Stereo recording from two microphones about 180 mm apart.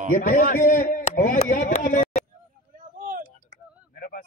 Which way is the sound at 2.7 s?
50° right (ahead or behind).